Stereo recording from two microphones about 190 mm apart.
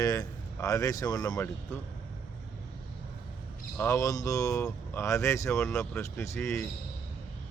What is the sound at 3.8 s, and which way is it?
Speech, 15° left (ahead or behind).